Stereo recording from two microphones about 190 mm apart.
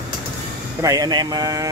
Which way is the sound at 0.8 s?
20° right (ahead or behind).